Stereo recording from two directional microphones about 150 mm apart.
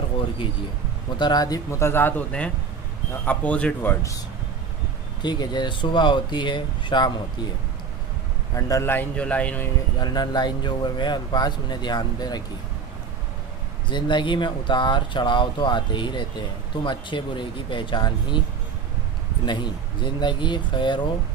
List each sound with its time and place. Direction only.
1.1 s a man's voice: 30° left (ahead or behind); by 3.9 s 10° left (ahead or behind)
5.2 s speech: 30° left (ahead or behind)
8.5 s a man's voice: 20° left (ahead or behind)
9.9 s speech: 25° left (ahead or behind)
13.8 s speech: 30° left (ahead or behind)
19.4 s speech: 30° left (ahead or behind)